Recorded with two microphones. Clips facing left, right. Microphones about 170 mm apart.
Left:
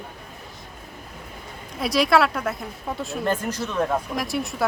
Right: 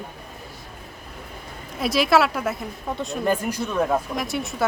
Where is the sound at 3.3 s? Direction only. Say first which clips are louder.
Right 2 dB; 10° right (ahead or behind).